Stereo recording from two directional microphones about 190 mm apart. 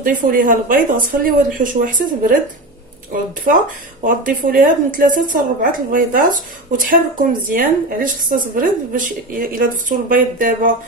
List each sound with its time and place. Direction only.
0.0 s speech: 45° right (ahead or behind)
4.0 s speech: 45° right (ahead or behind)